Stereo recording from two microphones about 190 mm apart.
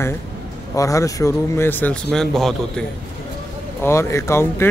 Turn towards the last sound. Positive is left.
turn(degrees=15)  # may be behind; listen again after turning